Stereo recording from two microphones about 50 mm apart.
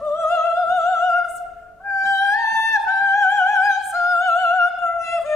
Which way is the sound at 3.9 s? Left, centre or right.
Left.